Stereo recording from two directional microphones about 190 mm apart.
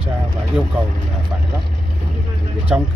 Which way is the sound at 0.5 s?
5° right (ahead or behind).